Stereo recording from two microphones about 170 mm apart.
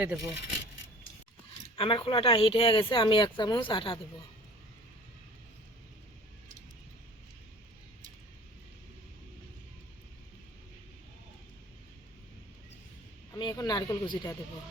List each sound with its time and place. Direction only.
0.0 s speech: 5° right (ahead or behind)
1.7 s speech: 30° left (ahead or behind)
13.3 s speech: 20° left (ahead or behind)